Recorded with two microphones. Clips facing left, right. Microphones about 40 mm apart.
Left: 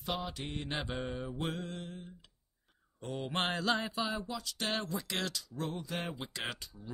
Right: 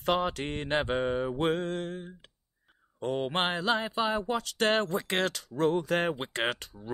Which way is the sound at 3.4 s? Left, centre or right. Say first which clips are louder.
Right 4 dB; centre.